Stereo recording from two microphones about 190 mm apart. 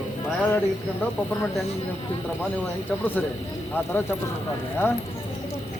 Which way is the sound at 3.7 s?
10° left (ahead or behind).